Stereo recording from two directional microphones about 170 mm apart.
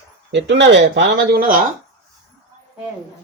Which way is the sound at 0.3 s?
90° right.